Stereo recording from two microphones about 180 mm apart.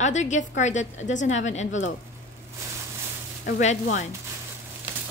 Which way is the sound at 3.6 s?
40° left (ahead or behind).